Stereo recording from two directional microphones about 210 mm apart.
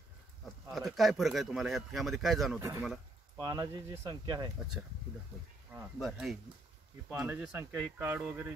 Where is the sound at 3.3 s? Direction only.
20° right (ahead or behind).